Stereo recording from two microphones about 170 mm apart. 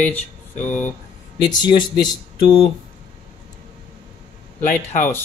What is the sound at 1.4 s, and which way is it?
Speech, 25° left (ahead or behind).